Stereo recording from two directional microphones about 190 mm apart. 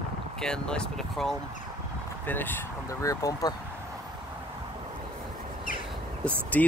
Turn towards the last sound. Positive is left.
turn(degrees=10)  # may be behind; listen again after turning